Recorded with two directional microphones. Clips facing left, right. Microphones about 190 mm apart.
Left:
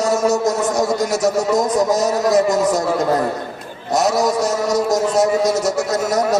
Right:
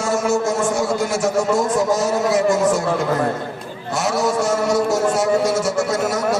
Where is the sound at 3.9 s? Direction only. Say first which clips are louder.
Left 3 dB; 40° left (ahead or behind).